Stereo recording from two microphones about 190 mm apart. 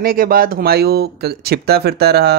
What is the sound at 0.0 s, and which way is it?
Speech, 50° right (ahead or behind).